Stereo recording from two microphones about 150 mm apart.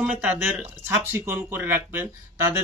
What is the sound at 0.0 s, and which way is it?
A man's voice, 10° right (ahead or behind).